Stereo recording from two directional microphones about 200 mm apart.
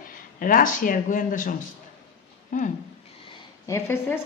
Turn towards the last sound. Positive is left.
turn(degrees=10)  # may be behind; listen again after turning